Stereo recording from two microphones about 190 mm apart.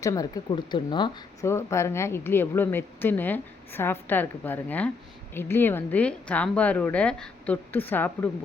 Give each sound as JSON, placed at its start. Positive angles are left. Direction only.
{"t": 0.0, "sound": "speech", "side_deg": 20}